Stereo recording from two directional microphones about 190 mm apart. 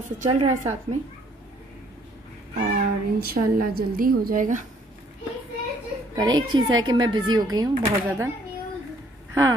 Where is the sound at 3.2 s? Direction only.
50° right (ahead or behind).